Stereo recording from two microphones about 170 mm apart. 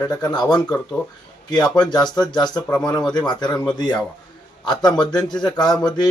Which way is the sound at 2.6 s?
10° left (ahead or behind).